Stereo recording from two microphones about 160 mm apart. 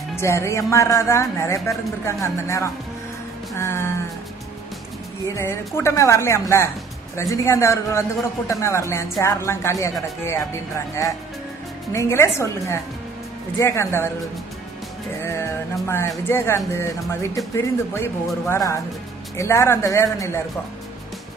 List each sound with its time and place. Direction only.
0.1 s speech: 15° left (ahead or behind)
5.3 s speech: 15° left (ahead or behind)
11.9 s speech: 15° left (ahead or behind)
15.2 s speech: 15° left (ahead or behind)